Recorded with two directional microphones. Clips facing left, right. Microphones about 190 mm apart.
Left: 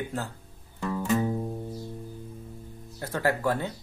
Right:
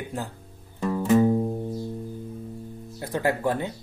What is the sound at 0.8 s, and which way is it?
Music, 20° right (ahead or behind).